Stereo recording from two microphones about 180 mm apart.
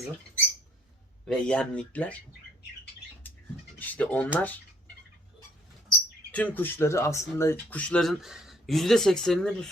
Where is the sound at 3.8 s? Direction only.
10° left (ahead or behind).